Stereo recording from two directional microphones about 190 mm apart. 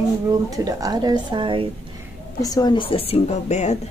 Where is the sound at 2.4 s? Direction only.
20° left (ahead or behind); by 3.8 s 35° left (ahead or behind).